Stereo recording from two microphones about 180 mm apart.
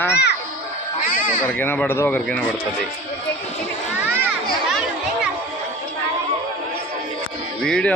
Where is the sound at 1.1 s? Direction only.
50° left (ahead or behind).